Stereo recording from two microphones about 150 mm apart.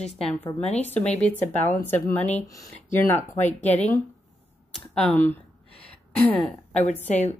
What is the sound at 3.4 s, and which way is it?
Speech, 50° left (ahead or behind).